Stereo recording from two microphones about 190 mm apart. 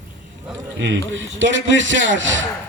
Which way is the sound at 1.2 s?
80° right.